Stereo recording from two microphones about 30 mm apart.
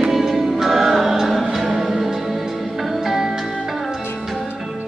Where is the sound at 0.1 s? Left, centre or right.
Centre.